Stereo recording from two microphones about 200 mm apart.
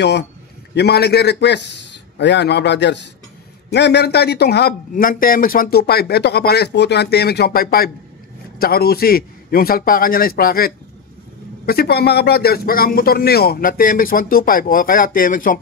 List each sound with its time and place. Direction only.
0.7 s a man's voice: 55° left (ahead or behind)